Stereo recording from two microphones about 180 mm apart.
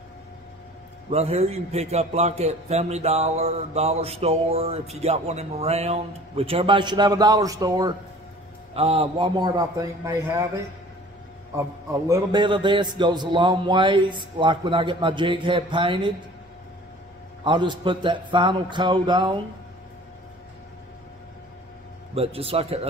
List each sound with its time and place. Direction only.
1.1 s a man's voice: 35° right (ahead or behind)
8.7 s a man's voice: 30° right (ahead or behind); by 10.6 s 15° right (ahead or behind)
12.1 s a man's voice: 25° right (ahead or behind)
17.4 s a man's voice: 25° right (ahead or behind)
22.1 s a man's voice: 35° right (ahead or behind)